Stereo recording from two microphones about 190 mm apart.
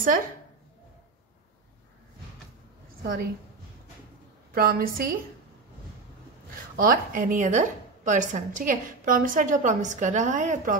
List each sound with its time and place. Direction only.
3.0 s a woman's voice: 50° right (ahead or behind)
4.5 s a woman's voice: 50° right (ahead or behind)
6.8 s a woman's voice: 50° right (ahead or behind)